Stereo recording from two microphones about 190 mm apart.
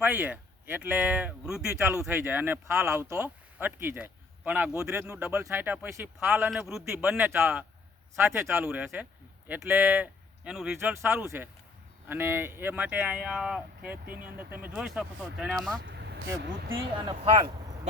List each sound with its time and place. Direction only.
0.0 s speech: 10° right (ahead or behind)
6.5 s speech: centre (ahead or behind)
14.0 s speech: 50° right (ahead or behind)
14.3 s speech: 10° right (ahead or behind)
16.4 s speech: 75° right (ahead or behind)